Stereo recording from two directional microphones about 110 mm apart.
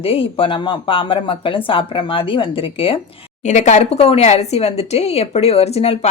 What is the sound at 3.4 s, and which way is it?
Speech, 90° left.